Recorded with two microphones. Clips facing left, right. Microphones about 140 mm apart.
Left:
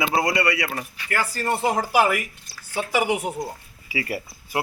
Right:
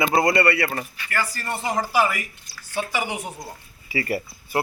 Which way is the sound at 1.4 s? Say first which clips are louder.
Left 6 dB; 60° left (ahead or behind).